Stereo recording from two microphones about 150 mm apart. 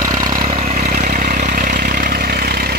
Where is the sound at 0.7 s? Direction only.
60° right (ahead or behind).